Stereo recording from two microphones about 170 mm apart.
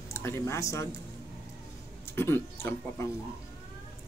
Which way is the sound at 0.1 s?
15° left (ahead or behind).